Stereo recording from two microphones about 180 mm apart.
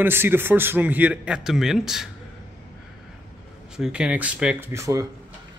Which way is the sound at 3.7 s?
5° right (ahead or behind).